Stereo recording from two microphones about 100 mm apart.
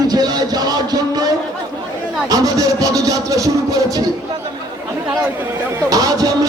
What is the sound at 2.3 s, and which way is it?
Music, 35° right (ahead or behind).